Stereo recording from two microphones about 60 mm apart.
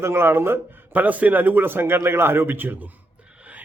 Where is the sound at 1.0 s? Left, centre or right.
Right.